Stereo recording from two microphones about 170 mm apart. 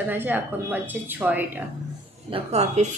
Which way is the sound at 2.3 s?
40° right (ahead or behind).